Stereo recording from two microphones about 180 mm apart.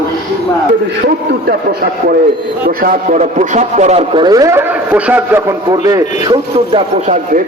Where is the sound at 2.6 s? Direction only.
50° right (ahead or behind); by 5.4 s 10° right (ahead or behind).